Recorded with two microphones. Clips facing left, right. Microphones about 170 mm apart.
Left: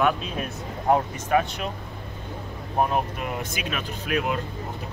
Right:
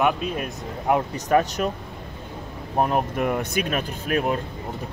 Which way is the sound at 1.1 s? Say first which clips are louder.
Right 3 dB; 40° right (ahead or behind).